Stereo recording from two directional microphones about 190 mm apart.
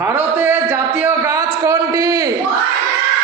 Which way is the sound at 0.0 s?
10° right (ahead or behind).